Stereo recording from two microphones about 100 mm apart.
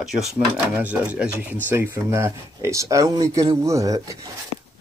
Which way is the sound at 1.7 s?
25° right (ahead or behind).